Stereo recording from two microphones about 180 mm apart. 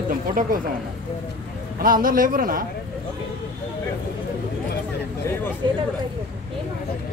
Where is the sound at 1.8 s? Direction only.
50° right (ahead or behind).